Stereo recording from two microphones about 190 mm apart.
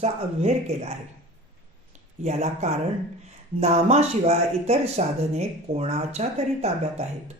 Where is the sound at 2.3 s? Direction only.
35° right (ahead or behind).